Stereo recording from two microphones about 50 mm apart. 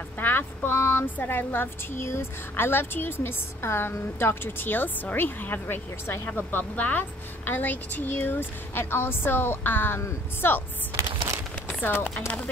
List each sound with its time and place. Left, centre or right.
0.2 s a woman's voice: left
2.0 s a woman's voice: left
6.7 s a woman's voice: left